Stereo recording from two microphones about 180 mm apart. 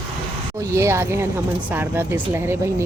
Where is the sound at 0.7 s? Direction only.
15° right (ahead or behind).